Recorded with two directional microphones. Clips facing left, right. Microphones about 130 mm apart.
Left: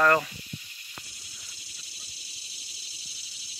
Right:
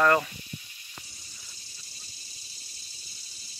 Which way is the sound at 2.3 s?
80° left.